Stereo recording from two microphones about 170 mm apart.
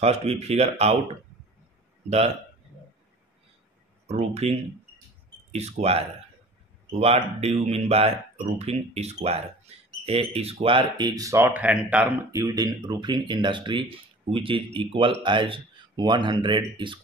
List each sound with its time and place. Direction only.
0.0 s speech: 40° right (ahead or behind)
2.0 s speech: 40° right (ahead or behind)
4.1 s speech: 40° right (ahead or behind)